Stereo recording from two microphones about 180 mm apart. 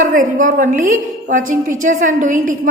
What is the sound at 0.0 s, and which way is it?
A woman's voice, 45° right (ahead or behind).